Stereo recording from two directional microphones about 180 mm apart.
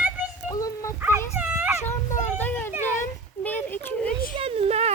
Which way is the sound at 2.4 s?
10° left (ahead or behind).